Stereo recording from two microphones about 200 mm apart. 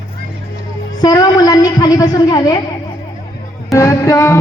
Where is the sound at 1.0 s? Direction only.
20° left (ahead or behind).